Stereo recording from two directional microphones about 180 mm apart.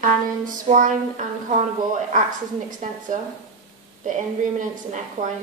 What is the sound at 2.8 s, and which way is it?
Speech, 40° right (ahead or behind).